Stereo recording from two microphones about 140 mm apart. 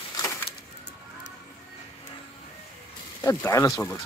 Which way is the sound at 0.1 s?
25° left (ahead or behind).